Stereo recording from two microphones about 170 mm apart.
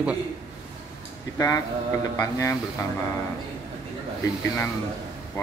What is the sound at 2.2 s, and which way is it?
Speech, 20° left (ahead or behind).